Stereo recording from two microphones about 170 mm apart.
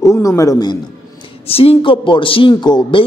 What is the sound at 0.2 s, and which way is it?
Speech, 20° left (ahead or behind).